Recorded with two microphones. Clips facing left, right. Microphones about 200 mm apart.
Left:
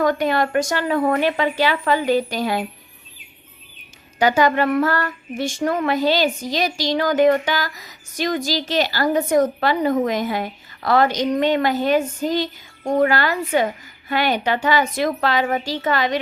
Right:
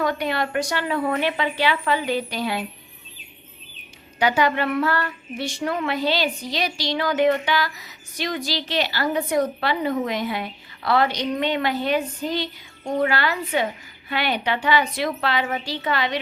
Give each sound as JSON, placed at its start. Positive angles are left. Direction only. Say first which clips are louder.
{"t": 0.0, "sound": "speech", "louder": "left 5 dB", "side_deg": 45}
{"t": 4.2, "sound": "speech", "louder": "left 4 dB", "side_deg": 45}